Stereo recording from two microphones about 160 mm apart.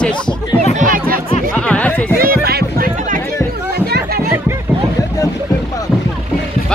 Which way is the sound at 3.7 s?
75° right (ahead or behind).